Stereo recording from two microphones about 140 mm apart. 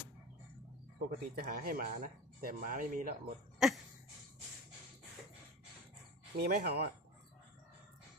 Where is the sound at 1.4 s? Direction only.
90° right.